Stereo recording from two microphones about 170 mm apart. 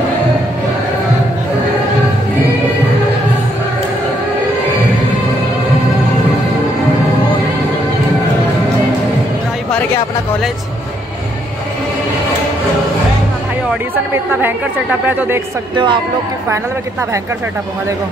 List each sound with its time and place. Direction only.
14.1 s speech: 10° right (ahead or behind)
15.7 s speech: 30° right (ahead or behind)